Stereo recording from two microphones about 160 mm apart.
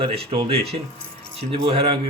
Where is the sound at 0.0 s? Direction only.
35° right (ahead or behind).